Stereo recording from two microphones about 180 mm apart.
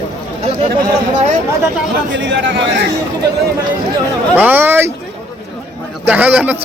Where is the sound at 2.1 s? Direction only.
85° right.